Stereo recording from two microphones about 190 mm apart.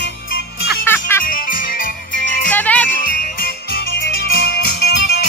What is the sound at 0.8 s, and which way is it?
Music, 10° left (ahead or behind).